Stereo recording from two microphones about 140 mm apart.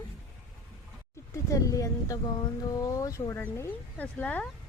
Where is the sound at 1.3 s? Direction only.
25° left (ahead or behind).